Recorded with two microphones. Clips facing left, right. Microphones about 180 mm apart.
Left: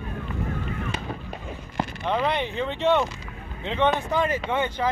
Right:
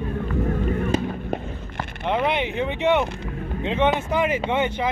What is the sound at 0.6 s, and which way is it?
Music, 40° right (ahead or behind).